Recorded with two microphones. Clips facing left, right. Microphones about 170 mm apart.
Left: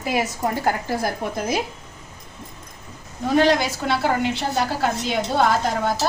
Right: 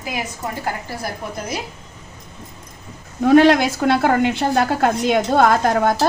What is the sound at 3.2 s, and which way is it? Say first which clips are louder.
A woman's voice: right 6 dB; 65° right (ahead or behind).